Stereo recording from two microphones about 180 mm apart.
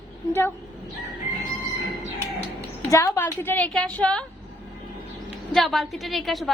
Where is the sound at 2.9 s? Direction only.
15° left (ahead or behind).